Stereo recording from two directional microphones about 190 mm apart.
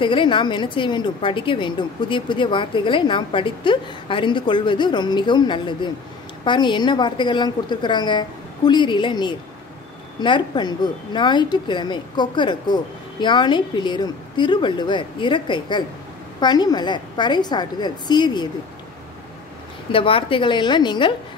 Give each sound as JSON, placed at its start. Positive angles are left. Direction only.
{"t": 0.0, "sound": "a woman's voice", "side_deg": 25}
{"t": 19.9, "sound": "a woman's voice", "side_deg": 30}